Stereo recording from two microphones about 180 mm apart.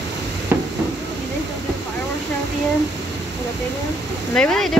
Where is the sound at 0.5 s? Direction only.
10° right (ahead or behind).